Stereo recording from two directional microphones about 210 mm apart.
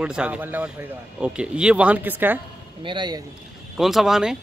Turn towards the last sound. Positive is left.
turn(degrees=0)  # may be behind; listen again after turning